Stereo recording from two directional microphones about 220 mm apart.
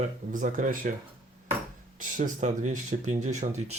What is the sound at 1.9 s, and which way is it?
Speech, 35° right (ahead or behind).